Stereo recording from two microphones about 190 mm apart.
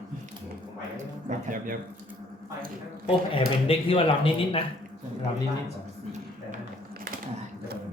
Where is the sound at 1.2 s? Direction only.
45° right (ahead or behind).